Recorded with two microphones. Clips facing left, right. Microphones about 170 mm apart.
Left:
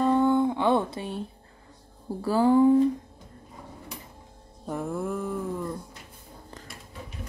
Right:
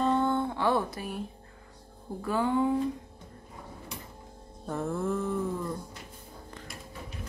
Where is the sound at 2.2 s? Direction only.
35° left (ahead or behind).